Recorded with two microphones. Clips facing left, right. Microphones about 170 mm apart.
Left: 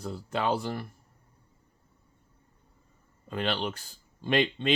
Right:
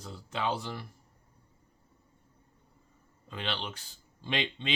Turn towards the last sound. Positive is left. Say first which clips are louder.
# left 8 dB
turn(degrees=50)  # may be behind; listen again after turning